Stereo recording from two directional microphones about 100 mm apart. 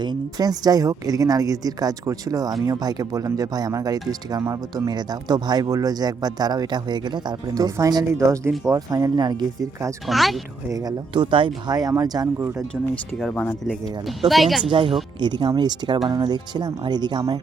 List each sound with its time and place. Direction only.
0.0 s a woman's voice: 45° right (ahead or behind)
10.1 s speech: centre (ahead or behind)
10.7 s a woman's voice: 40° right (ahead or behind)
11.1 s a woman's voice: 55° right (ahead or behind)
13.1 s speech: centre (ahead or behind)
14.7 s speech: 55° right (ahead or behind)